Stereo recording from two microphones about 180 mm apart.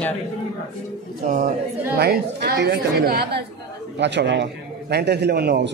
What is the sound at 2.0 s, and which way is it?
Speech, 60° right (ahead or behind).